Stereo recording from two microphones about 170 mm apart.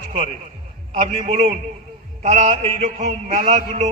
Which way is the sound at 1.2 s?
40° right (ahead or behind).